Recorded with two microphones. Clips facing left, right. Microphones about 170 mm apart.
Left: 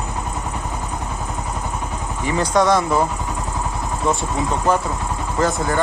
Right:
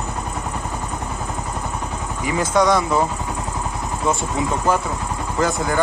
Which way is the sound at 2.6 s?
Centre (ahead or behind).